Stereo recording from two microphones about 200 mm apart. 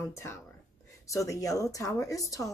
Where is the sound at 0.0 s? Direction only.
10° left (ahead or behind).